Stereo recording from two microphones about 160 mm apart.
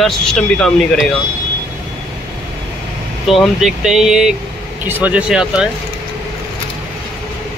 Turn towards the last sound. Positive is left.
turn(degrees=-5)  # may be behind; listen again after turning